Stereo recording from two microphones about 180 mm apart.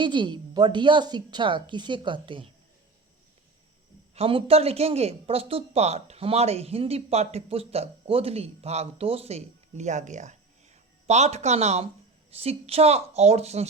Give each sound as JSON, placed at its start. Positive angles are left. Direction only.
{"t": 0.0, "sound": "a woman's voice", "side_deg": -25}
{"t": 4.1, "sound": "speech", "side_deg": -30}